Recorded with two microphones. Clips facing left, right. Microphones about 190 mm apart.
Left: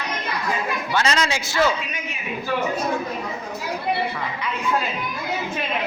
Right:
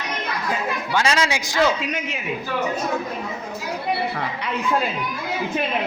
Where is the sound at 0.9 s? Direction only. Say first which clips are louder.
Right 1 dB; 10° right (ahead or behind).